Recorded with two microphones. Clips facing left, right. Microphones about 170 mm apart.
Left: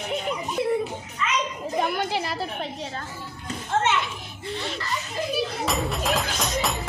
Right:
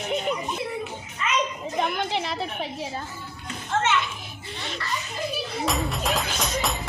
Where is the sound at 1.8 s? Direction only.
5° left (ahead or behind).